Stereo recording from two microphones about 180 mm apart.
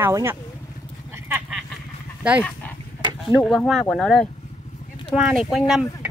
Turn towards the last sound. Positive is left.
turn(degrees=0)  # may be behind; listen again after turning